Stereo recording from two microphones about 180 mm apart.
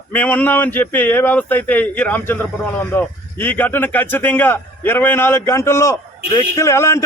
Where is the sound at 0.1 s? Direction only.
10° left (ahead or behind).